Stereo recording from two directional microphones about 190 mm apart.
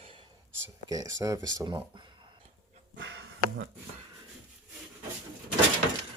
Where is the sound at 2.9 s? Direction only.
80° right.